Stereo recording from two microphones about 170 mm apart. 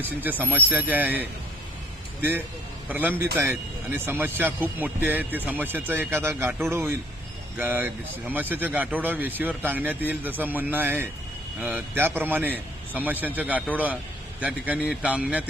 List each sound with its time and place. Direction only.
0.0 s speech: 10° right (ahead or behind)
2.9 s speech: 10° right (ahead or behind)